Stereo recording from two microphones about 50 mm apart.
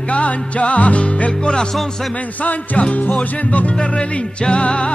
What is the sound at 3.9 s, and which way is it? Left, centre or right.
Music, centre.